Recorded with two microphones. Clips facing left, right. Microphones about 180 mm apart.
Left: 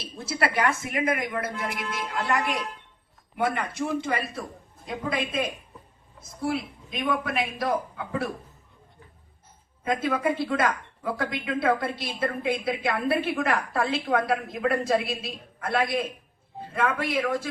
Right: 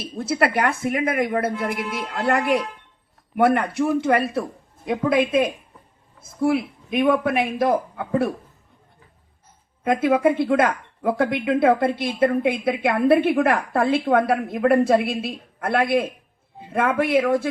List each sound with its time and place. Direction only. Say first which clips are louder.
0.0 s a woman's voice: right 6 dB; 55° right (ahead or behind)
9.8 s a woman's voice: right 7 dB; 55° right (ahead or behind)